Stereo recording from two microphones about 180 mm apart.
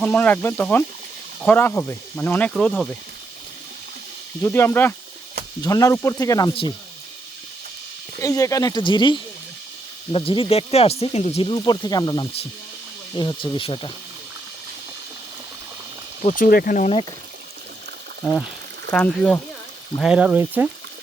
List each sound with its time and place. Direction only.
0.0 s speech: 10° left (ahead or behind)
4.4 s speech: 10° left (ahead or behind)
8.2 s speech: 20° left (ahead or behind)
16.2 s speech: 50° left (ahead or behind)
18.9 s speech: 5° left (ahead or behind)